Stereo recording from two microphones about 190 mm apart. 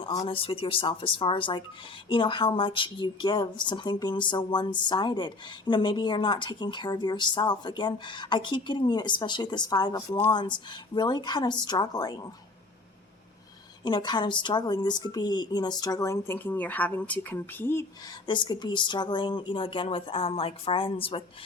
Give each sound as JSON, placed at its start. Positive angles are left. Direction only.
{"t": 0.2, "sound": "speech", "side_deg": 30}
{"t": 13.8, "sound": "speech", "side_deg": 25}
{"t": 18.3, "sound": "speech", "side_deg": 25}